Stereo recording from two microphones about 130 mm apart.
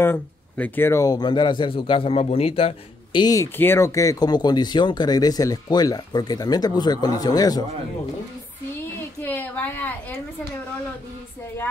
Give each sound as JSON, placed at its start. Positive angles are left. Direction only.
{"t": 0.0, "sound": "speech", "side_deg": 15}
{"t": 3.5, "sound": "speech", "side_deg": 20}
{"t": 9.2, "sound": "a woman's voice", "side_deg": 15}